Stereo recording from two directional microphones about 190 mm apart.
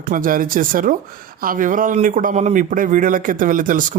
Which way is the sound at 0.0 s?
45° right (ahead or behind).